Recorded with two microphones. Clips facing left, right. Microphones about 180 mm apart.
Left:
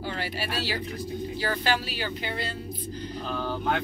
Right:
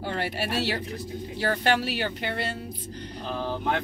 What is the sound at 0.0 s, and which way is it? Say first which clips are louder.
Speech: right 3 dB; 60° right (ahead or behind).